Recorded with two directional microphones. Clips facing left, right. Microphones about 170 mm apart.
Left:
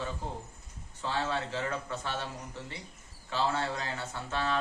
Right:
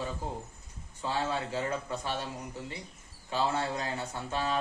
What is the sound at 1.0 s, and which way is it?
A man's voice, 15° right (ahead or behind).